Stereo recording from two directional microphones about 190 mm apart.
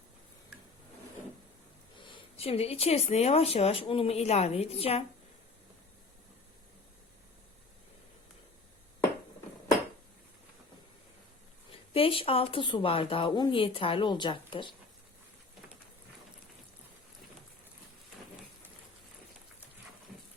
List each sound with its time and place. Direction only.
2.0 s speech: 30° left (ahead or behind)
11.7 s speech: 30° left (ahead or behind)